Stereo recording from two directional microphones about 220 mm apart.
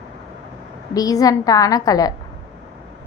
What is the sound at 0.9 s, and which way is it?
A woman's voice, 15° left (ahead or behind).